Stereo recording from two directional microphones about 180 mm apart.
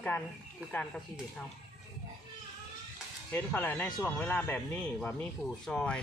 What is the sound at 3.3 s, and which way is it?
Speech, 10° left (ahead or behind).